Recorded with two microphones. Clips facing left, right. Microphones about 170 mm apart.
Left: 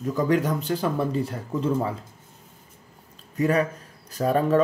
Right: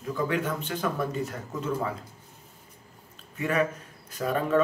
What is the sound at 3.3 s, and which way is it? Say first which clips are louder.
Speech: left 4 dB; 40° left (ahead or behind).